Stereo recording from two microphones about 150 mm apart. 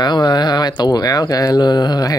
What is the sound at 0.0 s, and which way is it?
Speech, 30° left (ahead or behind).